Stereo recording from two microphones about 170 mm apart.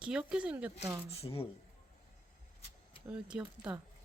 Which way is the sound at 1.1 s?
35° left (ahead or behind).